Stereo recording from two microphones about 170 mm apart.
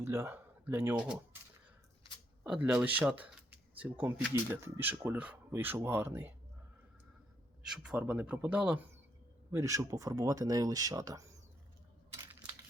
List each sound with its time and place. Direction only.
0.0 s speech: 15° right (ahead or behind)
2.4 s speech: 10° right (ahead or behind)
7.7 s speech: 5° right (ahead or behind)